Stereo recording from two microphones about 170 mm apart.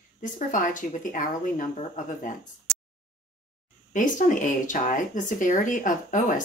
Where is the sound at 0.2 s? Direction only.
50° left (ahead or behind).